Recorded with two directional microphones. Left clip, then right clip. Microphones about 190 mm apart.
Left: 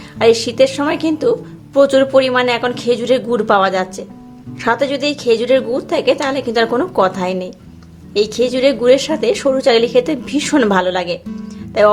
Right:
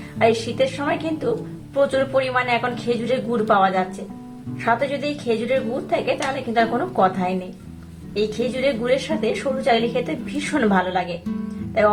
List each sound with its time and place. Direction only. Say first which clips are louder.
0.2 s a woman's voice: left 7 dB; 50° left (ahead or behind)